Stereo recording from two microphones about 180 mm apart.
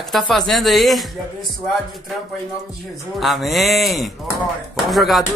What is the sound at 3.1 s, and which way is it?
Speech, centre (ahead or behind).